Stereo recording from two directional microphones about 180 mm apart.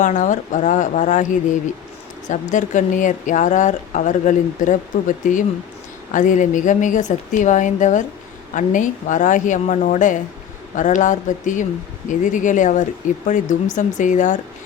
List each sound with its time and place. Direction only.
0.0 s speech: 45° left (ahead or behind)